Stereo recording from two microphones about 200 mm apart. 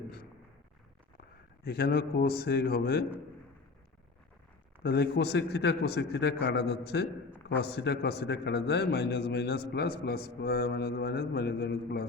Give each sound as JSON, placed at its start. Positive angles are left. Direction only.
{"t": 1.6, "sound": "a man's voice", "side_deg": 50}
{"t": 4.8, "sound": "a man's voice", "side_deg": 55}